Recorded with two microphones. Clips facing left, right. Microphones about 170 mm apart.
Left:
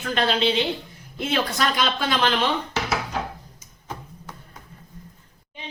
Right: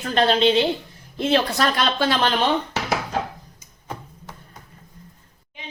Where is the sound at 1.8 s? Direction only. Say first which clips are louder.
Right 2 dB; 35° right (ahead or behind).